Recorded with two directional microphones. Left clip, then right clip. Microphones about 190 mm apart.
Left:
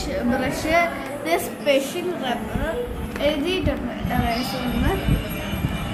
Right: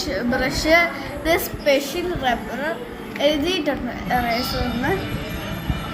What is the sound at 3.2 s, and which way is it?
Speech, 30° right (ahead or behind).